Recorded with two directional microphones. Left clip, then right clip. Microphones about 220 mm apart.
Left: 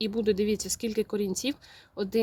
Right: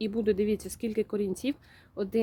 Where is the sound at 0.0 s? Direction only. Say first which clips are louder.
Left 1 dB; 5° left (ahead or behind).